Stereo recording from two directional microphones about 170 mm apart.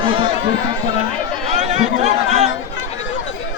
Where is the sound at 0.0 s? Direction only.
30° right (ahead or behind).